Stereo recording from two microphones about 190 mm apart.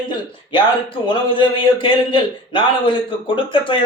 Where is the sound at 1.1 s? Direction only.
25° left (ahead or behind).